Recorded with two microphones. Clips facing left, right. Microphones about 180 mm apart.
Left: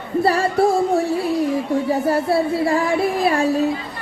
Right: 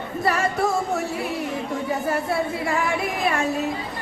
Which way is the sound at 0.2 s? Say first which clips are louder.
Left 6 dB; 30° left (ahead or behind).